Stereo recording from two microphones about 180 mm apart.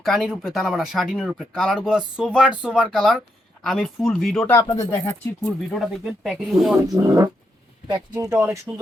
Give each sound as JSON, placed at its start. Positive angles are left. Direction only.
{"t": 0.0, "sound": "speech", "side_deg": 0}
{"t": 2.5, "sound": "speech", "side_deg": -5}
{"t": 6.8, "sound": "speech", "side_deg": -20}